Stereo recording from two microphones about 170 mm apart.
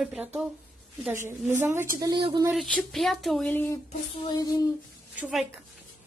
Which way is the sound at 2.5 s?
Centre (ahead or behind).